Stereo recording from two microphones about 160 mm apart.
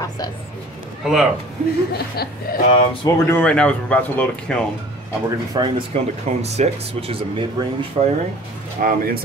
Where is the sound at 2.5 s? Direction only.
70° left (ahead or behind).